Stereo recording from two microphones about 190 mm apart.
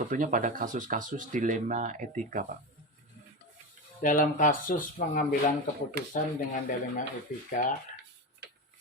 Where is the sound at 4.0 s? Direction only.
45° left (ahead or behind).